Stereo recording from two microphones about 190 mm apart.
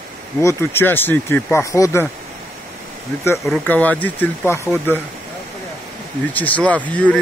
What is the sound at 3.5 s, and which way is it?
Speech, 10° left (ahead or behind).